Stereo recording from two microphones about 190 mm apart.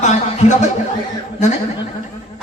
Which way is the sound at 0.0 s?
40° left (ahead or behind).